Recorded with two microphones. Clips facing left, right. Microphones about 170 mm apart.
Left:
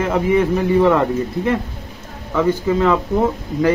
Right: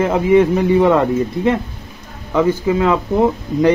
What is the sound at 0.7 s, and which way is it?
Speech, 15° right (ahead or behind).